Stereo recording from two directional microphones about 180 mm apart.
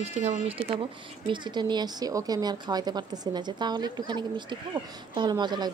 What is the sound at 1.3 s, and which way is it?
A woman's voice, 25° right (ahead or behind).